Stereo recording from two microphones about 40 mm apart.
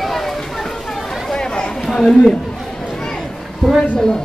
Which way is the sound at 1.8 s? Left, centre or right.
Centre.